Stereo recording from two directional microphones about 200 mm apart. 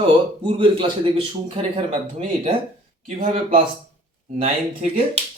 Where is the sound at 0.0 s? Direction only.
25° right (ahead or behind).